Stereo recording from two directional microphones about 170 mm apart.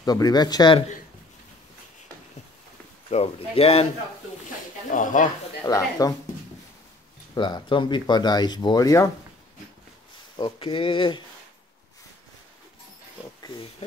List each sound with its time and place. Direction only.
0.0 s speech: 25° left (ahead or behind)
3.1 s speech: 35° left (ahead or behind)
4.9 s speech: 50° left (ahead or behind)
5.7 s speech: 20° left (ahead or behind)
7.3 s speech: 25° left (ahead or behind)
10.3 s speech: 25° left (ahead or behind)